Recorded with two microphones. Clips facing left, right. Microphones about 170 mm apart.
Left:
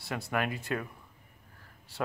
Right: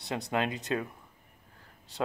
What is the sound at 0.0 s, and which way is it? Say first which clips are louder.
Speech: right 2 dB; 20° right (ahead or behind).